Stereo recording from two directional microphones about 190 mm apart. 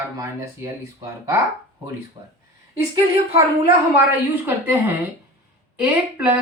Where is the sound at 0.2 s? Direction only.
15° right (ahead or behind).